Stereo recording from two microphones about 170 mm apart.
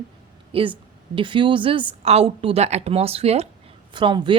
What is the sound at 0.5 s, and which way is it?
A woman's voice, 30° right (ahead or behind).